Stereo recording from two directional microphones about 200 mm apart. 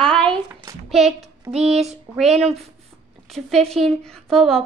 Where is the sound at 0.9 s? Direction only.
Centre (ahead or behind).